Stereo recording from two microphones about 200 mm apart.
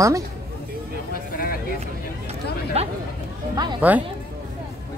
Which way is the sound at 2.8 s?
30° right (ahead or behind).